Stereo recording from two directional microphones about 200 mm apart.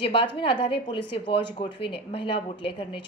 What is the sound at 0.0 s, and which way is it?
A woman's voice, 25° left (ahead or behind).